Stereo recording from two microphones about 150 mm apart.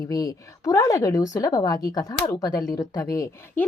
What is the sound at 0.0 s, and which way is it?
A woman's voice, 25° left (ahead or behind).